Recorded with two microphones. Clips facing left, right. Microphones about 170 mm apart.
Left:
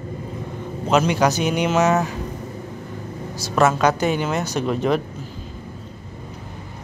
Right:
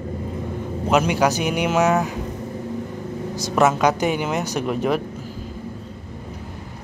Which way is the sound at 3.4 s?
15° right (ahead or behind).